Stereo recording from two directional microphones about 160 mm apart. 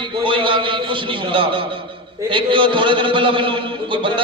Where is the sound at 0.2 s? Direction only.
30° right (ahead or behind).